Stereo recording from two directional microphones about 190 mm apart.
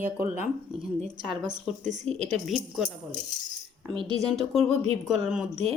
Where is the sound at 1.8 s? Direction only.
40° right (ahead or behind).